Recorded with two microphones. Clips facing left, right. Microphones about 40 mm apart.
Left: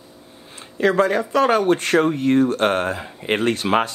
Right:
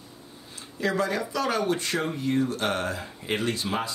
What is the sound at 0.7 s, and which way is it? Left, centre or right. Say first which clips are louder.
Speech: left 9 dB; left.